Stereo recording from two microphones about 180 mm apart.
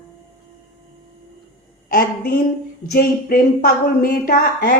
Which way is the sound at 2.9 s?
55° left (ahead or behind).